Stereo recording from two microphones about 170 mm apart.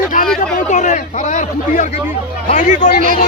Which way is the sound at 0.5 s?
45° left (ahead or behind).